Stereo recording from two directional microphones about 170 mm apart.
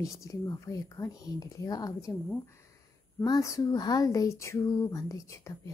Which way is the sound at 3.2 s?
20° left (ahead or behind).